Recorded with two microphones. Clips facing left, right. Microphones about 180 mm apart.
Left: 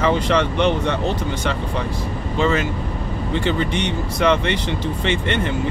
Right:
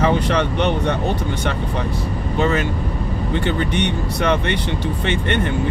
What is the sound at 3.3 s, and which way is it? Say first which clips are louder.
Speech: even; 60° right (ahead or behind).